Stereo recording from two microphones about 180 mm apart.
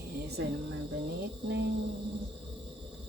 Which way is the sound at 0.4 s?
90° right.